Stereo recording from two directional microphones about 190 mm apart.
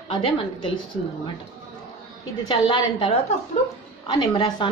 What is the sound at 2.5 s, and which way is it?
A woman's voice, 25° left (ahead or behind).